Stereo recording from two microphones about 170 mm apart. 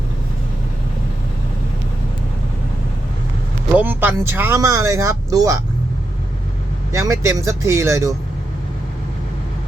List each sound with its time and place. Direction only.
3.8 s speech: 10° right (ahead or behind)
6.9 s speech: 20° right (ahead or behind)